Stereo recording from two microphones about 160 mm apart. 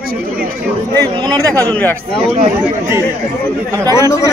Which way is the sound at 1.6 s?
10° left (ahead or behind).